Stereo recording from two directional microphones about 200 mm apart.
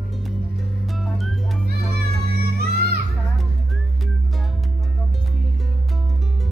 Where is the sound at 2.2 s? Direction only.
50° right (ahead or behind).